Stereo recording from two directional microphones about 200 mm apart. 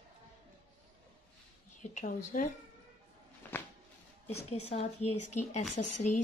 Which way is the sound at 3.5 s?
10° left (ahead or behind).